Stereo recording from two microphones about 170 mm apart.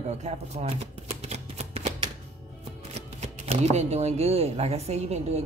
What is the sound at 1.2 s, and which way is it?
Typewriter, 35° right (ahead or behind).